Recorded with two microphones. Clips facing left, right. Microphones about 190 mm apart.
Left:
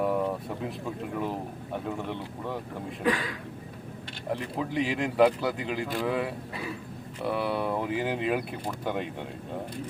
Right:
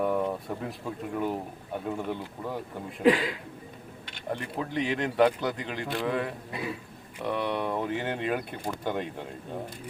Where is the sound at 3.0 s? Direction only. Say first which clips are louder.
Right 6 dB; 25° right (ahead or behind).